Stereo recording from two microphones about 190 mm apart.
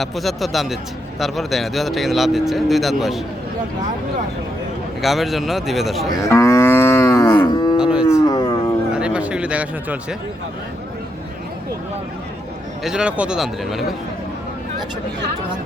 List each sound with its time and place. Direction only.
0.0 s speech: centre (ahead or behind)
5.0 s speech: centre (ahead or behind)
6.1 s livestock: 15° left (ahead or behind)
7.8 s cattle: 5° right (ahead or behind)
8.0 s a sound: 15° left (ahead or behind)
8.9 s a sound: 5° right (ahead or behind)
12.8 s speech: 5° right (ahead or behind)